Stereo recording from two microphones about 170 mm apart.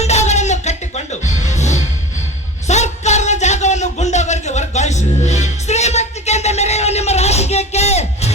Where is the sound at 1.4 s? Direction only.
45° left (ahead or behind).